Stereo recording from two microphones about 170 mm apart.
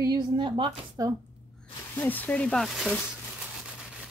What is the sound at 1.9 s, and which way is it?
Speech, 10° left (ahead or behind).